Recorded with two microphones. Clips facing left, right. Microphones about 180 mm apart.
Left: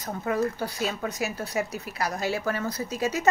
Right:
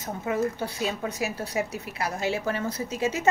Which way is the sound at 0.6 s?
25° right (ahead or behind).